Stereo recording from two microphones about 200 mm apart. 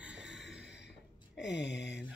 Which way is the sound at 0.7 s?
60° left (ahead or behind).